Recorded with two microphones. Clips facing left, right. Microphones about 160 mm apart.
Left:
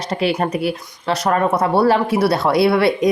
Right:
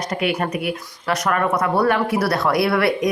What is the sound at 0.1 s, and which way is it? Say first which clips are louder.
Speech: left 4 dB; 30° left (ahead or behind).